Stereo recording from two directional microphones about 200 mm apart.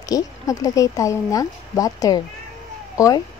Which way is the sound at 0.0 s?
15° left (ahead or behind).